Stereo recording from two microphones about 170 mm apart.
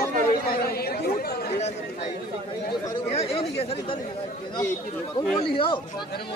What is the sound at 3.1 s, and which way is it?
Chatter, 35° left (ahead or behind).